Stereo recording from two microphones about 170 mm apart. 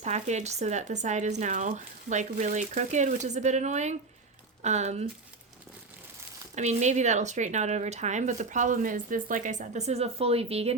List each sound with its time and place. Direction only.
0.0 s speech: 40° right (ahead or behind)
6.6 s speech: 45° right (ahead or behind)